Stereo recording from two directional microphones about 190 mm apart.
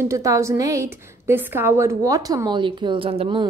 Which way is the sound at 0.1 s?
15° right (ahead or behind).